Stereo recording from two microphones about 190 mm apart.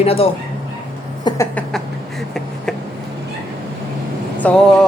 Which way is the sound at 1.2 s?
25° left (ahead or behind).